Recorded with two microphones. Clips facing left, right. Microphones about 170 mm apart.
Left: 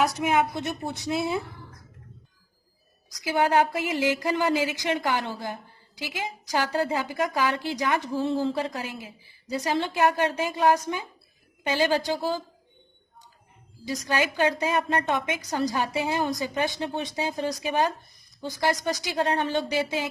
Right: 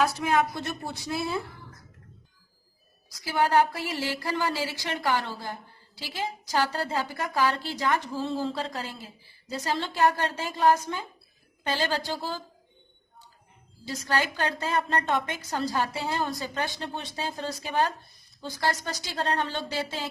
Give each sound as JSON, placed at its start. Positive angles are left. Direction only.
{"t": 0.0, "sound": "a woman's voice", "side_deg": 20}
{"t": 3.2, "sound": "a woman's voice", "side_deg": 15}
{"t": 13.8, "sound": "a woman's voice", "side_deg": 15}